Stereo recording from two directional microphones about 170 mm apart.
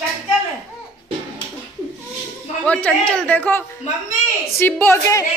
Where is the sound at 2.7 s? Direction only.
5° left (ahead or behind).